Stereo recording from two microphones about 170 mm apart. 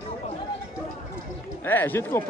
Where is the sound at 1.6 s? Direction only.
10° left (ahead or behind).